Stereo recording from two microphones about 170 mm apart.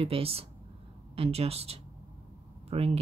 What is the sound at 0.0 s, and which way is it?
Speech, 35° right (ahead or behind).